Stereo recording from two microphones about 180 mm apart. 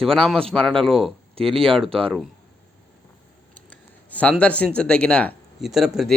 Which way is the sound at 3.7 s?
10° left (ahead or behind).